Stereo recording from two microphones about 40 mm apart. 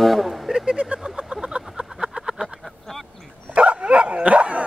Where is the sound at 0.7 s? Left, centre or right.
Right.